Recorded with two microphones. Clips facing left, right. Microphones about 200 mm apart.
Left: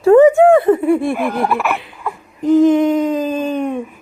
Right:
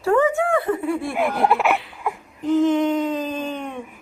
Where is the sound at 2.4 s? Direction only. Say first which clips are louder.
Left 7 dB; 15° left (ahead or behind).